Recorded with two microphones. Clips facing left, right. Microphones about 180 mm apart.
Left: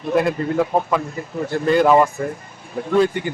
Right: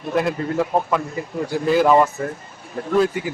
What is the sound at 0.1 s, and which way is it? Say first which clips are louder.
Speech: left 3 dB; centre (ahead or behind).